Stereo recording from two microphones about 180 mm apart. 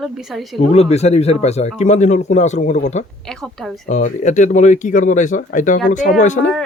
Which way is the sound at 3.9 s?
45° left (ahead or behind).